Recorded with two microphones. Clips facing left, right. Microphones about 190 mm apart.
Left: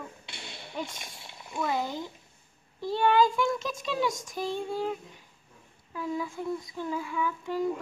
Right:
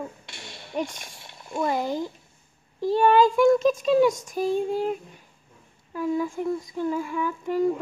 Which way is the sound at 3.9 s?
45° right (ahead or behind).